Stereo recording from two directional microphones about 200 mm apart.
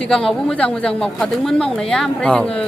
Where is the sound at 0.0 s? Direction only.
5° left (ahead or behind).